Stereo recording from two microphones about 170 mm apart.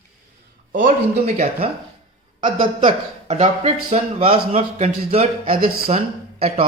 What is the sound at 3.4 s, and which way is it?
A man's voice, 35° right (ahead or behind).